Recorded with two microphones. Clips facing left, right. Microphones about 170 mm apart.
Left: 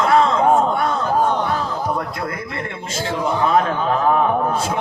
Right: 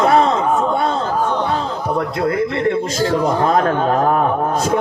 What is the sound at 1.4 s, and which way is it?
A man's voice, 25° right (ahead or behind).